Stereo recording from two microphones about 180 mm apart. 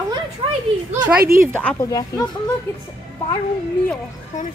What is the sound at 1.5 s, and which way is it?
Speech, 10° left (ahead or behind).